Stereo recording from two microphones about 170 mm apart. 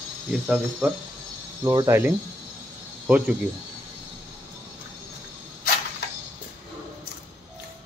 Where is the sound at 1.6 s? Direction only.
15° right (ahead or behind).